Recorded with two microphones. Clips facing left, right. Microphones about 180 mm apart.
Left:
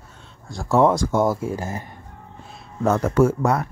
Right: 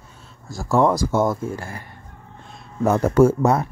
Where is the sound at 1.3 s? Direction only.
15° left (ahead or behind).